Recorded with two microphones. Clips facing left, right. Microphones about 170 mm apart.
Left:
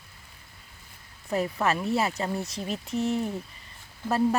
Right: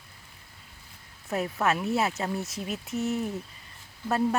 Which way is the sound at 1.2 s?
Centre (ahead or behind).